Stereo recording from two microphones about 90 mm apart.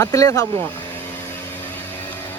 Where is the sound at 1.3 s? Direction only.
20° left (ahead or behind).